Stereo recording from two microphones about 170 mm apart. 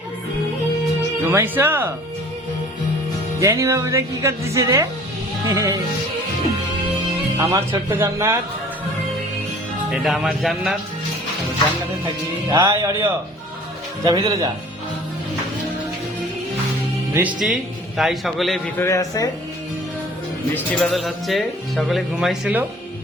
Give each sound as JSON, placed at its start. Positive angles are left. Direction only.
{"t": 1.3, "sound": "speech", "side_deg": -15}
{"t": 3.4, "sound": "speech", "side_deg": -15}
{"t": 7.3, "sound": "speech", "side_deg": -15}
{"t": 9.9, "sound": "speech", "side_deg": 0}
{"t": 12.5, "sound": "speech", "side_deg": -25}
{"t": 12.7, "sound": "speech", "side_deg": -15}
{"t": 17.2, "sound": "speech", "side_deg": -5}
{"t": 18.8, "sound": "a man's voice", "side_deg": 20}
{"t": 20.7, "sound": "speech", "side_deg": 5}